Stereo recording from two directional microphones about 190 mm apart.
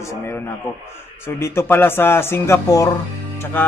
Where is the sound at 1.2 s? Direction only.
15° left (ahead or behind).